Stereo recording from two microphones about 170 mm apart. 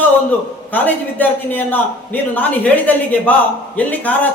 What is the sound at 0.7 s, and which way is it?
Speech, 10° left (ahead or behind).